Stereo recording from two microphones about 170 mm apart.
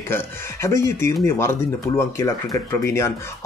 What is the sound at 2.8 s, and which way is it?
Speech, 15° left (ahead or behind).